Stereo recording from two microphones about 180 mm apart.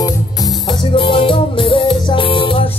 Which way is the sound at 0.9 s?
30° left (ahead or behind).